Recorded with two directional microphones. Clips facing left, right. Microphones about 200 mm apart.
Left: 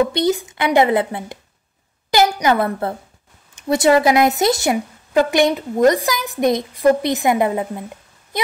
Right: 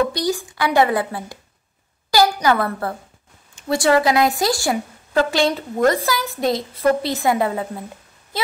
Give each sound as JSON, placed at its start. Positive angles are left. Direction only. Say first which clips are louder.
{"t": 0.0, "sound": "a woman's voice", "louder": "left 3 dB", "side_deg": 20}